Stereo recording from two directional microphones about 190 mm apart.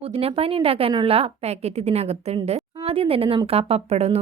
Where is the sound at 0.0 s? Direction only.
30° right (ahead or behind).